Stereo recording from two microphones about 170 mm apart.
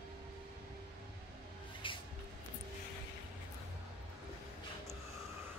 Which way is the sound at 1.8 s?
30° left (ahead or behind).